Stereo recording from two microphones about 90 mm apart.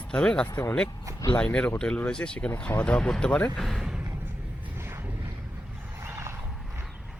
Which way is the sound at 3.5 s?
Centre (ahead or behind).